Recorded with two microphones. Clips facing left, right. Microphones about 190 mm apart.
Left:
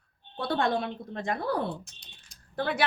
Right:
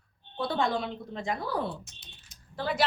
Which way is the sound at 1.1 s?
55° left (ahead or behind).